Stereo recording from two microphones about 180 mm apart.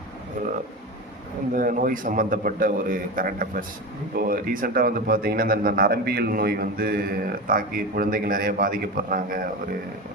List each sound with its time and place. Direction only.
1.5 s a man's voice: 50° right (ahead or behind)